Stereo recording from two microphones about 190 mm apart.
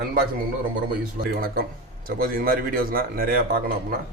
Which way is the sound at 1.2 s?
50° right (ahead or behind).